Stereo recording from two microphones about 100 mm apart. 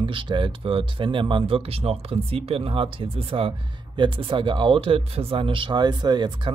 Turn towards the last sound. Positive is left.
turn(degrees=-50)  # may be behind; listen again after turning